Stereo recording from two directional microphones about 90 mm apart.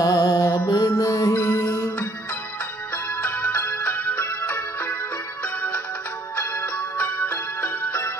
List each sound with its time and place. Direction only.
0.0 s music: 40° left (ahead or behind)
3.2 s music: 20° left (ahead or behind)
6.3 s music: 20° left (ahead or behind)